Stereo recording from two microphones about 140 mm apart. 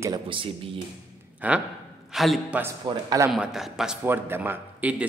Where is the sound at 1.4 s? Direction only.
10° right (ahead or behind).